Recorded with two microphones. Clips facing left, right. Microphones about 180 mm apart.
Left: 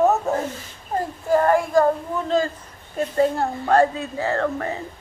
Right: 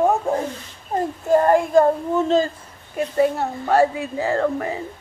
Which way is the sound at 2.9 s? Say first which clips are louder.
Right 1 dB; 10° right (ahead or behind).